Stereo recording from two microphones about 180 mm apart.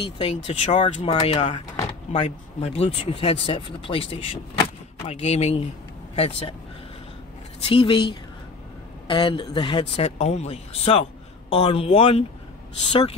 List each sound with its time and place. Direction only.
0.0 s speech: 35° left (ahead or behind)
7.6 s speech: 30° left (ahead or behind)